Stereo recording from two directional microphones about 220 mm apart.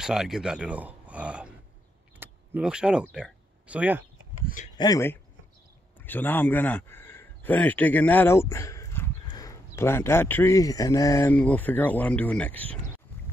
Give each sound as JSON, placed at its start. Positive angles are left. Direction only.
{"t": 0.0, "sound": "speech", "side_deg": 0}
{"t": 4.7, "sound": "a man's voice", "side_deg": 15}